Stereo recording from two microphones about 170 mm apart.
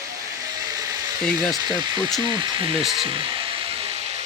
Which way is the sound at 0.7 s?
20° right (ahead or behind).